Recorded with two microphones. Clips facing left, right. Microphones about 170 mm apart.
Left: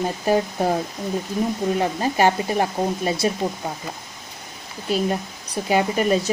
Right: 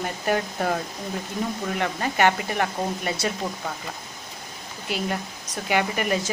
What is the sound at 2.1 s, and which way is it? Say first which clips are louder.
A woman's voice: left 2 dB; 30° left (ahead or behind).